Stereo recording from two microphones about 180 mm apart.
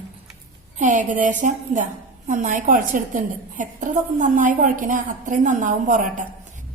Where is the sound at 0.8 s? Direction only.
45° right (ahead or behind).